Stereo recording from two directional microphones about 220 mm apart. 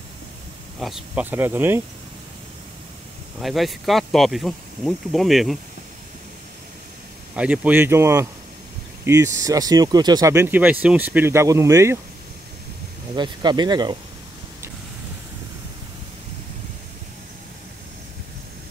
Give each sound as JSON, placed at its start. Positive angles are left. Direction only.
{"t": 0.7, "sound": "speech", "side_deg": 0}
{"t": 3.3, "sound": "speech", "side_deg": 0}
{"t": 7.3, "sound": "speech", "side_deg": -5}
{"t": 13.1, "sound": "speech", "side_deg": -20}